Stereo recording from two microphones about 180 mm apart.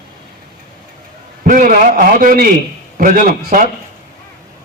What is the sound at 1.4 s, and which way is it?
A man's voice, 50° right (ahead or behind).